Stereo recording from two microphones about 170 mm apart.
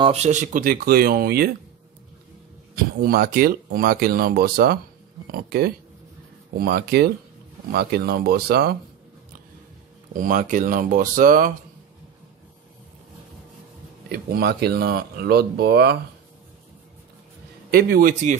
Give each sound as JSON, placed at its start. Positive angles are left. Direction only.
{"t": 0.0, "sound": "speech", "side_deg": -40}
{"t": 2.7, "sound": "speech", "side_deg": -60}
{"t": 10.1, "sound": "speech", "side_deg": -50}
{"t": 14.0, "sound": "speech", "side_deg": -65}
{"t": 17.6, "sound": "a man's voice", "side_deg": -65}